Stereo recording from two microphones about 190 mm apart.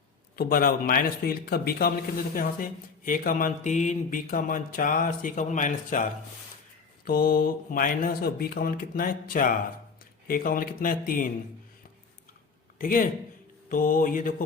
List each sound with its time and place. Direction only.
0.3 s a man's voice: 50° left (ahead or behind)
12.8 s a man's voice: 45° left (ahead or behind)